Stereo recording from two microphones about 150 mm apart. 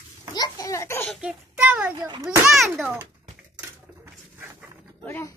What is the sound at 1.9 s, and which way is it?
Speech, 30° right (ahead or behind).